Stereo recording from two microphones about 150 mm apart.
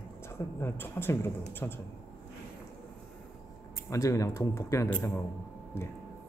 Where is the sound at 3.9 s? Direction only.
20° left (ahead or behind).